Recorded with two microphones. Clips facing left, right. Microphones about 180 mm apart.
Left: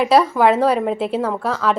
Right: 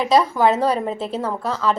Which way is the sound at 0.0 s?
5° left (ahead or behind).